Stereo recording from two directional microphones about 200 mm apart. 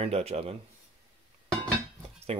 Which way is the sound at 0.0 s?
30° right (ahead or behind).